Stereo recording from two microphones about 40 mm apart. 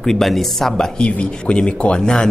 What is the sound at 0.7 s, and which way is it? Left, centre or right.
Speech, left.